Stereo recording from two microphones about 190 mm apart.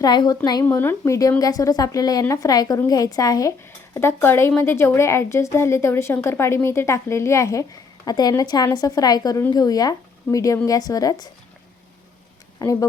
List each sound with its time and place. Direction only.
0.0 s a woman's voice: 20° left (ahead or behind)
12.6 s a woman's voice: 15° left (ahead or behind)